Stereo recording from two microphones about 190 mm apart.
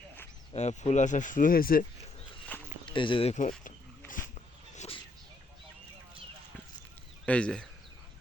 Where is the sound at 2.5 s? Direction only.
10° left (ahead or behind).